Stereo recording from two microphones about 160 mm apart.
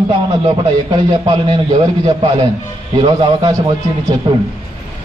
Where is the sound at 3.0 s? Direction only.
30° right (ahead or behind).